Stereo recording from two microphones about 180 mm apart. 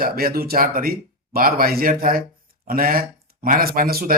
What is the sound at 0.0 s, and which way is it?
Speech, 55° right (ahead or behind).